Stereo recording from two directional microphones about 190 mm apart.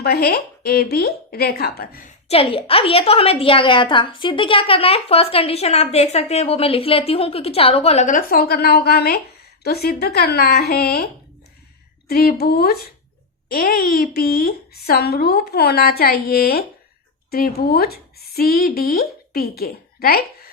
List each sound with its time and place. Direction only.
0.0 s speech: 55° left (ahead or behind)
2.2 s a woman's voice: 30° left (ahead or behind); by 20.2 s 55° left (ahead or behind)